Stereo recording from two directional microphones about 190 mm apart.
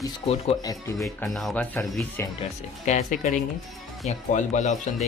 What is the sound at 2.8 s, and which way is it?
Speech, 40° left (ahead or behind).